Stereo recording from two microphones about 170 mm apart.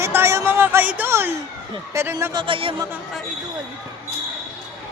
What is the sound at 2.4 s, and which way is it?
Speech, 30° right (ahead or behind).